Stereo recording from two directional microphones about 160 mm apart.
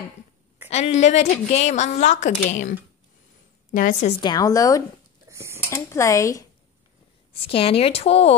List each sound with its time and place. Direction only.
0.7 s a woman's voice: 45° left (ahead or behind)
3.7 s a woman's voice: 55° left (ahead or behind)
4.2 s a woman's voice: 25° left (ahead or behind)
5.3 s dishes: 15° right (ahead or behind)
5.6 s speech: 15° left (ahead or behind)
7.4 s speech: 35° left (ahead or behind)